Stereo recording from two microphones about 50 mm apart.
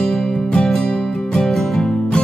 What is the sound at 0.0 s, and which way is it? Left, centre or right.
Music, centre.